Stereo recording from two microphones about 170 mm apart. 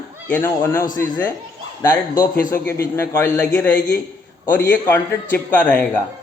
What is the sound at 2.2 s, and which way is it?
Speech, 60° left (ahead or behind).